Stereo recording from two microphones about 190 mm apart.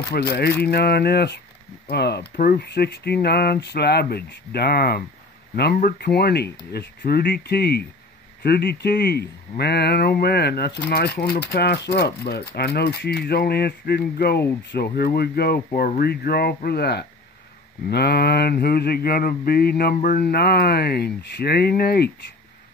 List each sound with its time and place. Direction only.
0.1 s mantra: 60° left (ahead or behind)